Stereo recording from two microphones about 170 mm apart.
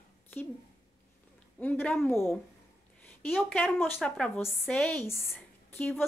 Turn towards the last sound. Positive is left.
turn(degrees=10)  # may be behind; listen again after turning